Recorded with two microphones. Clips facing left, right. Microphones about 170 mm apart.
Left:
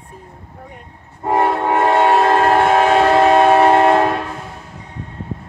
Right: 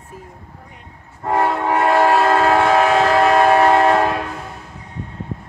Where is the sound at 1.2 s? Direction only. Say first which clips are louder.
Left 2 dB; 20° left (ahead or behind).